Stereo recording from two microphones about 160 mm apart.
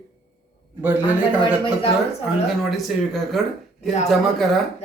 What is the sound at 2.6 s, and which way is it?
Speech, centre (ahead or behind).